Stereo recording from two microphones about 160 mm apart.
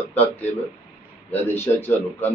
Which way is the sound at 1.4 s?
15° left (ahead or behind).